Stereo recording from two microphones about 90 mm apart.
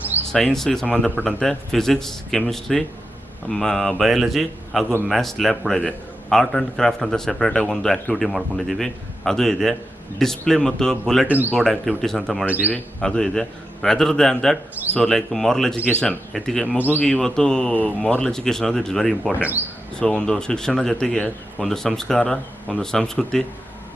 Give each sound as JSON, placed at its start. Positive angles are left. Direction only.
{"t": 0.3, "sound": "speech", "side_deg": 5}
{"t": 1.1, "sound": "speech", "side_deg": 20}
{"t": 1.4, "sound": "speech", "side_deg": 5}
{"t": 11.3, "sound": "speech", "side_deg": -20}
{"t": 11.5, "sound": "speech", "side_deg": 5}
{"t": 12.5, "sound": "a man's voice", "side_deg": -15}
{"t": 12.7, "sound": "speech", "side_deg": 10}
{"t": 16.7, "sound": "speech", "side_deg": 20}
{"t": 17.0, "sound": "a man's voice", "side_deg": 5}